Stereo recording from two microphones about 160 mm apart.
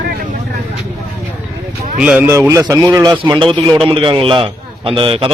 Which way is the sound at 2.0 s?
5° right (ahead or behind).